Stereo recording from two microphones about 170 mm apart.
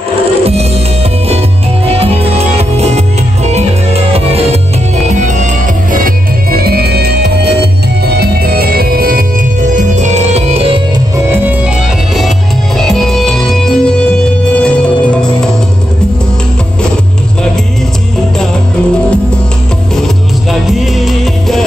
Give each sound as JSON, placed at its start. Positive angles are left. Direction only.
{"t": 2.0, "sound": "music", "side_deg": -35}
{"t": 5.9, "sound": "music", "side_deg": -60}
{"t": 9.8, "sound": "music", "side_deg": -45}
{"t": 12.7, "sound": "music", "side_deg": 0}
{"t": 20.6, "sound": "music", "side_deg": 0}